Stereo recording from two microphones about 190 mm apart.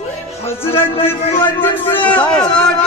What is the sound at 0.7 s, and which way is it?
Speech, 30° left (ahead or behind).